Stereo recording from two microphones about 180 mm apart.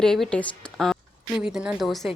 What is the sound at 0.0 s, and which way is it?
A woman's voice, centre (ahead or behind).